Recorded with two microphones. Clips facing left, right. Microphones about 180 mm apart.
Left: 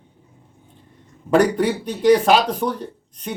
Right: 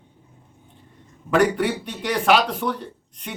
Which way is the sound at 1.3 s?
40° left (ahead or behind).